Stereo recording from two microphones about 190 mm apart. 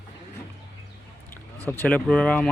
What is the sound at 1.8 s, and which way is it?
Speech, 5° left (ahead or behind).